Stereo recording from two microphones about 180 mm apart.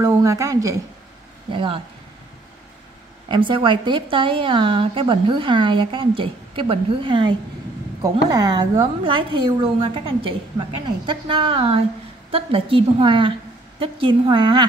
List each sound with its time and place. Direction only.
0.0 s a woman's voice: 15° right (ahead or behind)
3.3 s a woman's voice: 25° right (ahead or behind)